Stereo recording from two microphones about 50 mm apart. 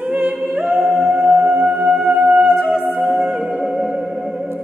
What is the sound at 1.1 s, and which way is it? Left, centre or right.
Music, right.